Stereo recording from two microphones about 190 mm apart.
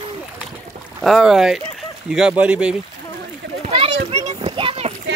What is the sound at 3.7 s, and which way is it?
Children playing, 30° right (ahead or behind).